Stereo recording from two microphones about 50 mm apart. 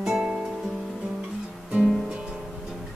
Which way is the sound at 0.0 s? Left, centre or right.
Centre.